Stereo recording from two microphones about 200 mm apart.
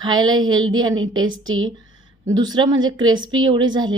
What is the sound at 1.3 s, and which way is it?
Speech, 80° right.